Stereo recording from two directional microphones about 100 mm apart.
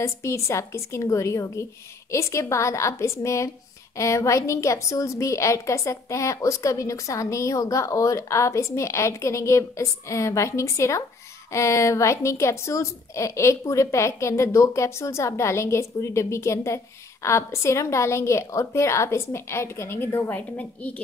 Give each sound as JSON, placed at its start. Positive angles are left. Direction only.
{"t": 0.0, "sound": "a woman's voice", "side_deg": 30}
{"t": 20.3, "sound": "a woman's voice", "side_deg": 15}